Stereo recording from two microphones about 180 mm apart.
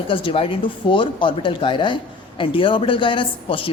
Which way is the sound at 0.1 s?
30° left (ahead or behind).